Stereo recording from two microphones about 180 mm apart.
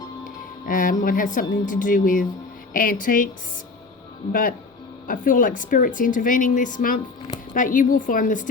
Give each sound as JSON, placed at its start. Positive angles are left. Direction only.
{"t": 0.3, "sound": "speech", "side_deg": 50}
{"t": 4.3, "sound": "speech", "side_deg": 50}